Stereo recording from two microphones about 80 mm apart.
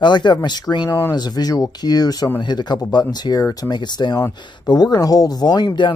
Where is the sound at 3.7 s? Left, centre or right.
Left.